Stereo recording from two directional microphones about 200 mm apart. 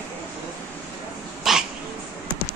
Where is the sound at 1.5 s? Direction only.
Centre (ahead or behind).